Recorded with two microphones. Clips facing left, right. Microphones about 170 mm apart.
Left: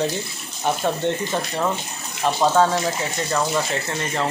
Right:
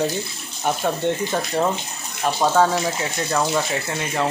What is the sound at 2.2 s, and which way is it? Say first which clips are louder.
Speech: even; 5° right (ahead or behind).